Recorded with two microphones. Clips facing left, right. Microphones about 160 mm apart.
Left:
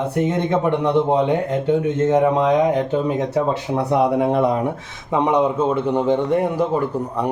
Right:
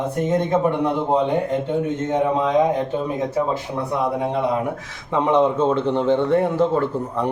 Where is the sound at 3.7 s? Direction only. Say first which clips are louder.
Left 8 dB; 65° left (ahead or behind).